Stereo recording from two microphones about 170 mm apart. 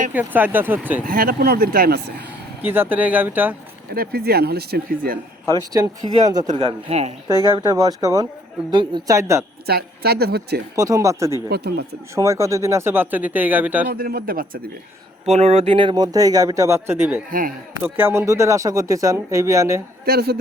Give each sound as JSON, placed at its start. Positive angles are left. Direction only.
{"t": 0.1, "sound": "speech", "side_deg": -10}
{"t": 1.0, "sound": "speech", "side_deg": -60}
{"t": 2.6, "sound": "speech", "side_deg": -10}
{"t": 3.9, "sound": "speech", "side_deg": -65}
{"t": 5.5, "sound": "speech", "side_deg": -20}
{"t": 6.5, "sound": "a man's voice", "side_deg": -35}
{"t": 7.5, "sound": "speech", "side_deg": -20}
{"t": 9.6, "sound": "speech", "side_deg": -65}
{"t": 10.8, "sound": "speech", "side_deg": -20}
{"t": 11.4, "sound": "speech", "side_deg": -70}
{"t": 12.1, "sound": "speech", "side_deg": -15}
{"t": 13.8, "sound": "speech", "side_deg": -60}
{"t": 15.3, "sound": "speech", "side_deg": -40}
{"t": 20.1, "sound": "speech", "side_deg": -65}